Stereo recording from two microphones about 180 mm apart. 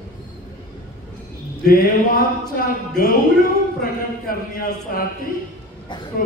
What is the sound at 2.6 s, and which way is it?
Speech, 55° left (ahead or behind).